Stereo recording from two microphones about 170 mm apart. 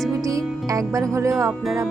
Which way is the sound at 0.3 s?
20° right (ahead or behind).